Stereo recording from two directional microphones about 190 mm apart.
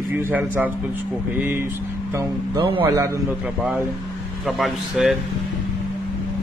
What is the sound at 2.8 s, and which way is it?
Speech, 15° right (ahead or behind).